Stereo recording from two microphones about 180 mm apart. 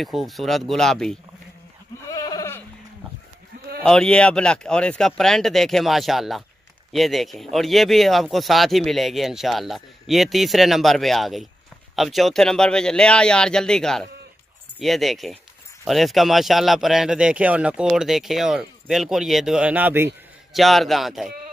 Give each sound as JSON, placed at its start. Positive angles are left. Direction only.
{"t": 0.0, "sound": "speech", "side_deg": 0}
{"t": 2.0, "sound": "goat", "side_deg": 20}
{"t": 3.8, "sound": "speech", "side_deg": 5}
{"t": 20.5, "sound": "speech", "side_deg": 0}